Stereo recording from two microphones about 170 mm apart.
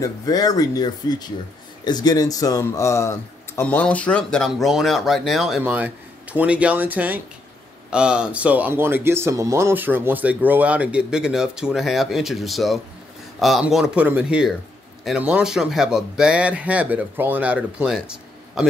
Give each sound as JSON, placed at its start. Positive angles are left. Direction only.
{"t": 0.0, "sound": "speech", "side_deg": 20}